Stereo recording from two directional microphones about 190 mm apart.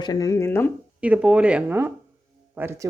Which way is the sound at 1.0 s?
5° right (ahead or behind).